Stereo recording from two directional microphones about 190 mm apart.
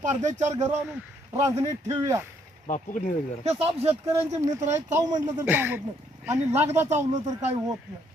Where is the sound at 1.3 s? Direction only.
15° right (ahead or behind).